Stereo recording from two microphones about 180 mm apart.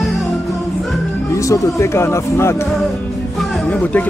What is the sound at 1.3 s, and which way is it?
Speech, 20° left (ahead or behind).